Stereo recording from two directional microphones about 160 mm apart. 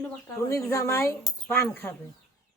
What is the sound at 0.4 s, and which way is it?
Speech, 20° left (ahead or behind).